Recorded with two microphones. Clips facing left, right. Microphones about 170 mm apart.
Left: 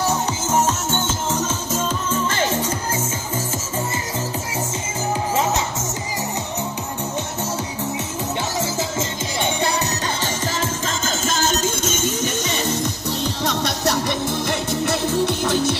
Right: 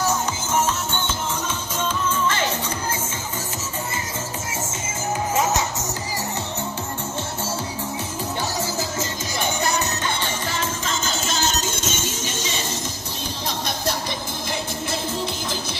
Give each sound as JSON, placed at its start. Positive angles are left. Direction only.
{"t": 0.5, "sound": "music", "side_deg": 40}
{"t": 5.3, "sound": "music", "side_deg": 30}
{"t": 8.5, "sound": "music", "side_deg": 25}